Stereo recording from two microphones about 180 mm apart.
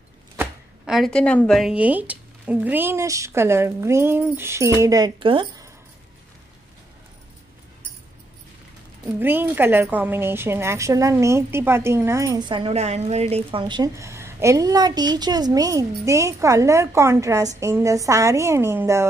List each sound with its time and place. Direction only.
0.4 s a woman's voice: centre (ahead or behind); by 5.7 s 25° right (ahead or behind)
9.2 s a woman's voice: 10° right (ahead or behind)